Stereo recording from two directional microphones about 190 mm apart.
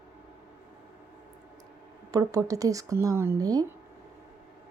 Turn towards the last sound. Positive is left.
turn(degrees=-20)  # may be behind; listen again after turning